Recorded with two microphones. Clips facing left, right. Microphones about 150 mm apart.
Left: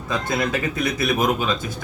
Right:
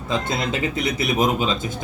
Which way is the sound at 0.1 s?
20° right (ahead or behind).